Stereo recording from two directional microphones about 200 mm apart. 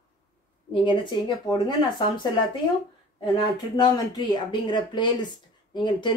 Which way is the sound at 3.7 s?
20° left (ahead or behind).